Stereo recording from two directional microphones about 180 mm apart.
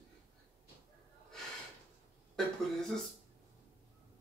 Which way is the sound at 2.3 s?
Centre (ahead or behind).